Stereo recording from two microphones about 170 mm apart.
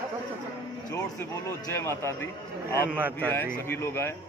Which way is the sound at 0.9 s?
15° left (ahead or behind).